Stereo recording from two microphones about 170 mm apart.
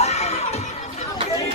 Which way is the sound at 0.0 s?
40° left (ahead or behind).